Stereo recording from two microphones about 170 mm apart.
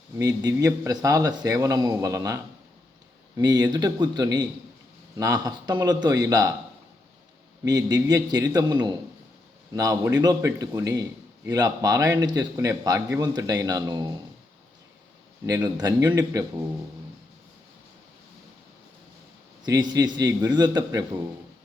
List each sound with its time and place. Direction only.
0.2 s speech: 20° right (ahead or behind)
7.6 s speech: 20° right (ahead or behind)
15.4 s speech: 20° right (ahead or behind)
19.6 s speech: 25° right (ahead or behind)